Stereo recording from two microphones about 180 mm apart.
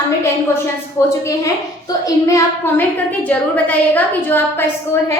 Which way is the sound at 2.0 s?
15° left (ahead or behind).